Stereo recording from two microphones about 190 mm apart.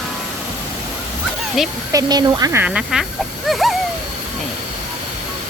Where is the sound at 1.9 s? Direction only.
20° right (ahead or behind); by 3.8 s centre (ahead or behind).